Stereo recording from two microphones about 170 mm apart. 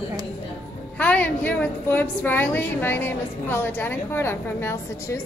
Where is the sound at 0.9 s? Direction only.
10° left (ahead or behind).